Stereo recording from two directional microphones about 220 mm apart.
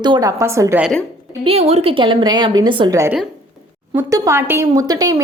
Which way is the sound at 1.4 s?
25° right (ahead or behind).